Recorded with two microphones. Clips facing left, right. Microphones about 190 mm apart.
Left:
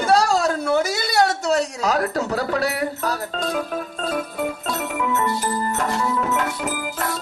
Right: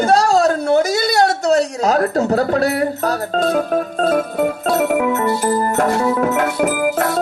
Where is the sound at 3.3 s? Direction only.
45° right (ahead or behind).